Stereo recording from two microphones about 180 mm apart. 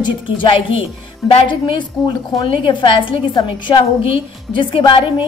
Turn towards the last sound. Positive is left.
turn(degrees=30)  # may be behind; listen again after turning